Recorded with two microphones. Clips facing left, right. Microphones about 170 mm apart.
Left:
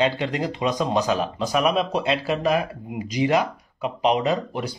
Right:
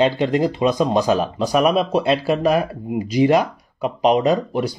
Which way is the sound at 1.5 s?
35° right (ahead or behind).